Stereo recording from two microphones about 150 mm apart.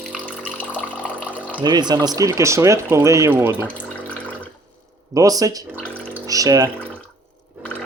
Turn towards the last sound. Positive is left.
turn(degrees=-25)  # may be behind; listen again after turning